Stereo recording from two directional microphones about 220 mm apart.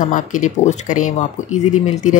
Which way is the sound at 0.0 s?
35° left (ahead or behind).